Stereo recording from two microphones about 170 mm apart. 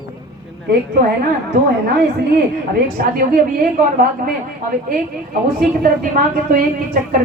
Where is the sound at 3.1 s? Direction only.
60° right (ahead or behind).